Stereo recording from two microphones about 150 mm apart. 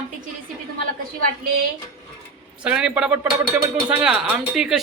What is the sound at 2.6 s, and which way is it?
A man's voice, 5° right (ahead or behind).